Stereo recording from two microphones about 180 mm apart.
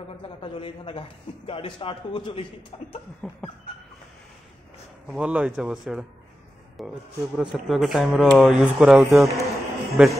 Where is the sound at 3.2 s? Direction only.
Centre (ahead or behind).